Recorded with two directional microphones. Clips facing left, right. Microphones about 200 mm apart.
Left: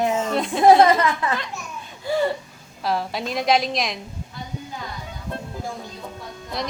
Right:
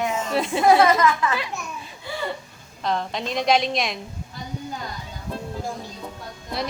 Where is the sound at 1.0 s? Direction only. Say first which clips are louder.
Right 2 dB; 35° left (ahead or behind).